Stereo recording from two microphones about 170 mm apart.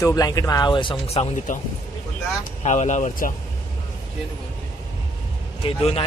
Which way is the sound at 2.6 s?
45° left (ahead or behind).